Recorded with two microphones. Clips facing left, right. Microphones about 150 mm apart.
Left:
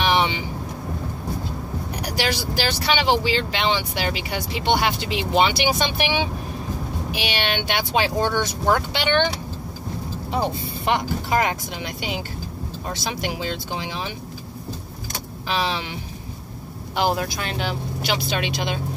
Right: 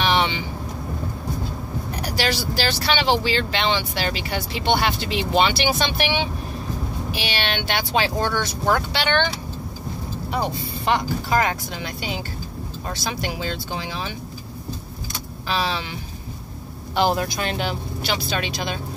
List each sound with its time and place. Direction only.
0.0 s vehicle: 10° left (ahead or behind)
2.0 s speech: 15° left (ahead or behind)
10.9 s speech: 20° left (ahead or behind)
15.4 s speech: 20° left (ahead or behind)
16.9 s speech: 5° left (ahead or behind)
18.0 s speech: 15° left (ahead or behind)